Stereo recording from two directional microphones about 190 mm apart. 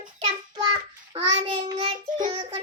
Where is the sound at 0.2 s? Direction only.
25° right (ahead or behind).